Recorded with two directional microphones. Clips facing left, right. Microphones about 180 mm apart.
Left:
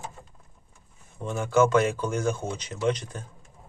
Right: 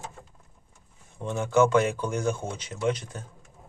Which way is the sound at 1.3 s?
15° right (ahead or behind).